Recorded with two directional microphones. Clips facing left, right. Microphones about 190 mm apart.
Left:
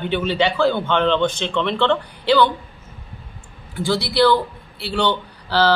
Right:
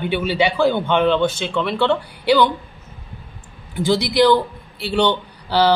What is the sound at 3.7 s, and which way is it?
Speech, 20° right (ahead or behind).